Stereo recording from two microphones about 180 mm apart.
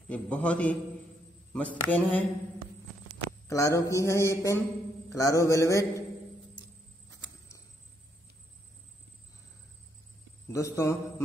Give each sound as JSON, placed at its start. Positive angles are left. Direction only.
{"t": 0.1, "sound": "a man's voice", "side_deg": 5}
{"t": 3.3, "sound": "a man's voice", "side_deg": 15}
{"t": 7.1, "sound": "a sound", "side_deg": 15}
{"t": 10.5, "sound": "a man's voice", "side_deg": 15}